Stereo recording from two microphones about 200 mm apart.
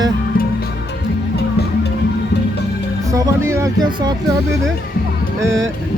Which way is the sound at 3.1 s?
15° right (ahead or behind).